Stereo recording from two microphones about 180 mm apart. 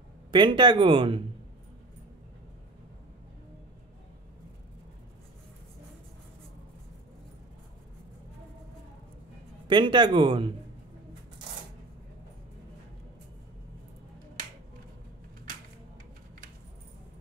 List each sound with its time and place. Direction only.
0.3 s speech: 25° right (ahead or behind)
9.7 s speech: 25° right (ahead or behind)